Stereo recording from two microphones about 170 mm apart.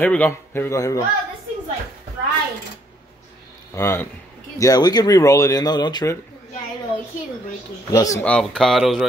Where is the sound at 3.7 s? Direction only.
15° left (ahead or behind).